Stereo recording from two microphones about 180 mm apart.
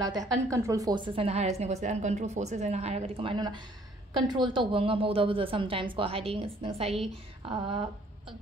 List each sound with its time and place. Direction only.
0.0 s a woman's voice: 20° right (ahead or behind)